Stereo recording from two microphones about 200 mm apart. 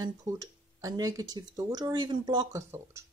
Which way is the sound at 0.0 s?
20° right (ahead or behind).